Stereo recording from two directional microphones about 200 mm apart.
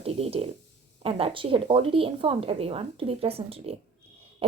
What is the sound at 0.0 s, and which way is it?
Writing, 30° right (ahead or behind).